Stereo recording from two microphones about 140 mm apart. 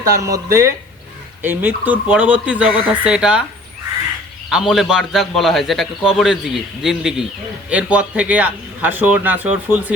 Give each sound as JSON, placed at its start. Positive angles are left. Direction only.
{"t": 0.2, "sound": "a man's voice", "side_deg": -20}
{"t": 4.4, "sound": "a man's voice", "side_deg": -5}